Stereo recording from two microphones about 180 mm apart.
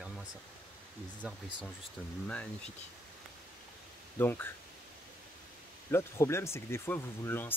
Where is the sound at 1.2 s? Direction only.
5° right (ahead or behind).